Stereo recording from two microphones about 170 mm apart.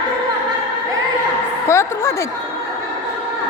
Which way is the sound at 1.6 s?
15° left (ahead or behind).